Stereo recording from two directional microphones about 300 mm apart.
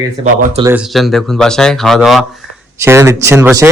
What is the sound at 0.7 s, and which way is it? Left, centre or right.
Speech, centre.